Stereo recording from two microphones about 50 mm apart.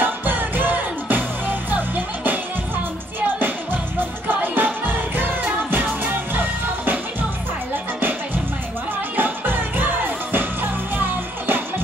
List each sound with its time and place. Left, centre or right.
0.0 s music: right
9.1 s music: right